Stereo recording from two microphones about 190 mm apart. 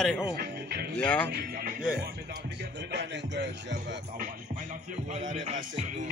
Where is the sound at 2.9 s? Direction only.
65° right (ahead or behind).